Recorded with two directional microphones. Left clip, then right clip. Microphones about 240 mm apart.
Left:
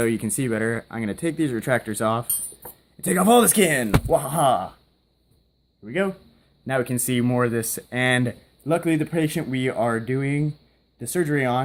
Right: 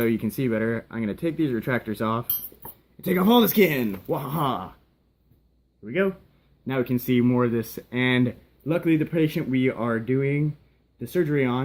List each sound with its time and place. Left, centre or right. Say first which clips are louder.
0.0 s speech: left 1 dB; left
2.2 s cutlery: left 6 dB; centre
3.0 s speech: left 3 dB; left
5.8 s a man's voice: even; left
6.7 s speech: left 1 dB; left